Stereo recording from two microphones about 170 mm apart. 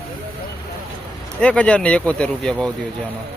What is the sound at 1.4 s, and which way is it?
Speech, 5° left (ahead or behind).